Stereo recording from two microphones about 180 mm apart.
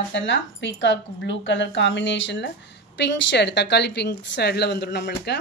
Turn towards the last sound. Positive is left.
turn(degrees=70)  # may be behind; listen again after turning